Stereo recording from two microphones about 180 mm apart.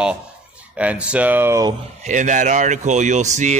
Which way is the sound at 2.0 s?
45° right (ahead or behind).